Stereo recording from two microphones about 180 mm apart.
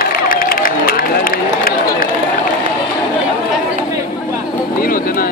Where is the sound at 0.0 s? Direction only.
55° left (ahead or behind).